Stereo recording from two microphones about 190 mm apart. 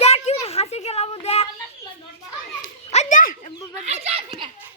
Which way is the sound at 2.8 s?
40° left (ahead or behind).